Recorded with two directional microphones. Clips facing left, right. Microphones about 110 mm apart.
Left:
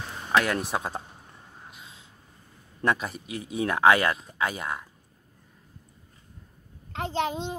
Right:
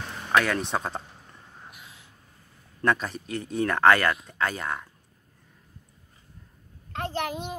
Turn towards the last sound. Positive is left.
turn(degrees=25)  # may be behind; listen again after turning